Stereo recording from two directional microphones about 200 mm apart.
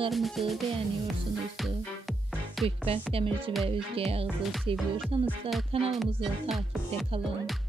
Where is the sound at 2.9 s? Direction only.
30° right (ahead or behind).